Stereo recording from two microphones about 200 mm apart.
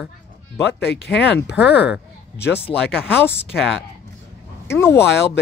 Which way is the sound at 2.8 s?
5° left (ahead or behind).